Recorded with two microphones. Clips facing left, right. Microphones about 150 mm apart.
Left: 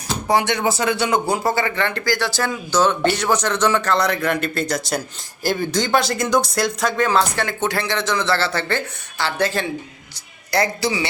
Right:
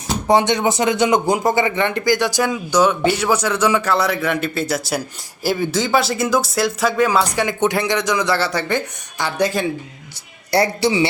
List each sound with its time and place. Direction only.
0.3 s speech: 20° right (ahead or behind)
10.5 s a man's voice: 30° right (ahead or behind)